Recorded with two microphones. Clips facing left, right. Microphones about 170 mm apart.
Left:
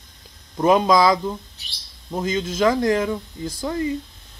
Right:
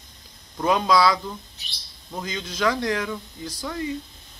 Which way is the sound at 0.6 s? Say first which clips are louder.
Left 5 dB; 25° left (ahead or behind).